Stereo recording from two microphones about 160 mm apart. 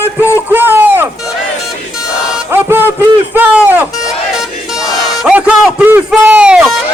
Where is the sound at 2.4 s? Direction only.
15° right (ahead or behind).